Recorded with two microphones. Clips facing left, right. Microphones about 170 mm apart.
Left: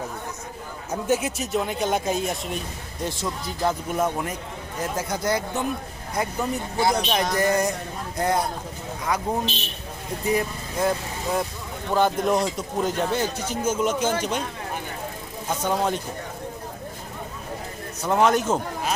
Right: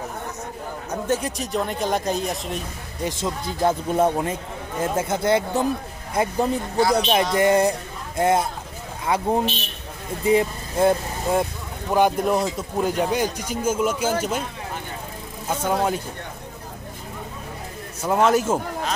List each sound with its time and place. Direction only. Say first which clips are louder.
0.9 s speech: left 1 dB; 10° left (ahead or behind)
3.0 s speech: right 3 dB; 20° right (ahead or behind)
11.9 s speech: right 2 dB; 10° right (ahead or behind)
15.4 s speech: right 2 dB; 10° right (ahead or behind)
18.0 s speech: right 1 dB; 5° right (ahead or behind)